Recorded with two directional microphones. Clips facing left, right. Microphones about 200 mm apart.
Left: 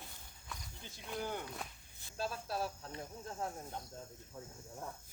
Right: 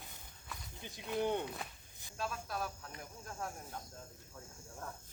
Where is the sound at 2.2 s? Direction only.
30° left (ahead or behind).